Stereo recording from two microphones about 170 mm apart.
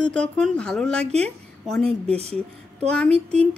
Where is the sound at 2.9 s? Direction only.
5° left (ahead or behind).